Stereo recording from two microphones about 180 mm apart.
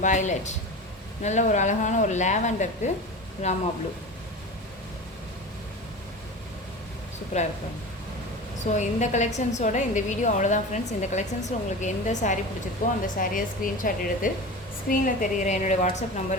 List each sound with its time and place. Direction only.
0.0 s a woman's voice: 40° left (ahead or behind)
8.7 s a woman's voice: 40° left (ahead or behind)